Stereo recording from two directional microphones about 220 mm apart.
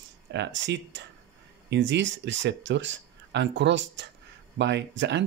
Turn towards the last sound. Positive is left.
turn(degrees=-55)  # may be behind; listen again after turning